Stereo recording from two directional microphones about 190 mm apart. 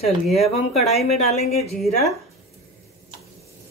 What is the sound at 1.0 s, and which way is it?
Speech, 35° left (ahead or behind).